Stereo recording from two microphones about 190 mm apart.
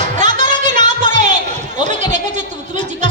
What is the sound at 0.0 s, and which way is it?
Music, 40° right (ahead or behind).